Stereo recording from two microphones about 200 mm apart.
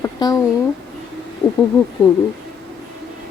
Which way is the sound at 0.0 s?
15° left (ahead or behind).